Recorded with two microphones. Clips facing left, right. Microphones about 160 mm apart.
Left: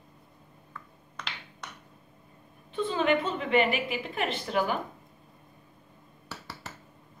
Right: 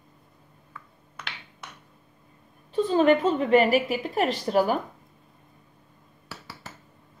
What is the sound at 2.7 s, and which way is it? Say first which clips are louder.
A woman's voice: right 6 dB; 40° right (ahead or behind).